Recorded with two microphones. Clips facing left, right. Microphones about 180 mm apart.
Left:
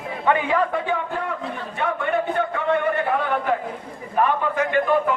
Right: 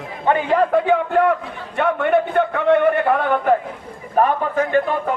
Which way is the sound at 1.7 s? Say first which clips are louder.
Right 7 dB; 60° right (ahead or behind).